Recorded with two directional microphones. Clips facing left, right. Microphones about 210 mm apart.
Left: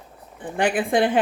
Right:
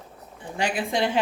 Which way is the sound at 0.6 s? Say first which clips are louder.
Left 5 dB; 55° left (ahead or behind).